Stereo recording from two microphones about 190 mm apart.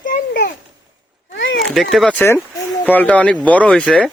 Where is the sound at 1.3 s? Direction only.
75° left (ahead or behind).